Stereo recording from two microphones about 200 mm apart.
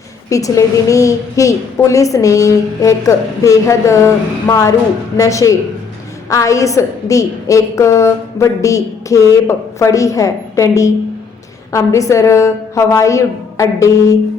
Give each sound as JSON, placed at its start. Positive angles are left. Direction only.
{"t": 0.3, "sound": "a woman's voice", "side_deg": 15}